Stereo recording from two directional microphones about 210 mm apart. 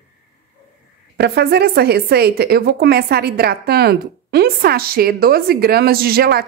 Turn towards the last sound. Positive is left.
turn(degrees=-50)  # may be behind; listen again after turning